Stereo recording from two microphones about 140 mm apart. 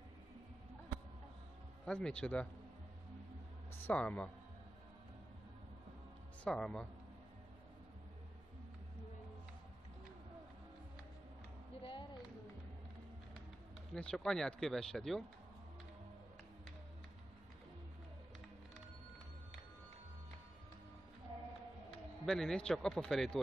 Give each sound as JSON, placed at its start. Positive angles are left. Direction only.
{"t": 1.9, "sound": "speech", "side_deg": 5}
{"t": 3.7, "sound": "speech", "side_deg": 10}
{"t": 6.4, "sound": "speech", "side_deg": 5}
{"t": 11.8, "sound": "a sound", "side_deg": 40}
{"t": 13.9, "sound": "speech", "side_deg": 5}
{"t": 22.2, "sound": "speech", "side_deg": 0}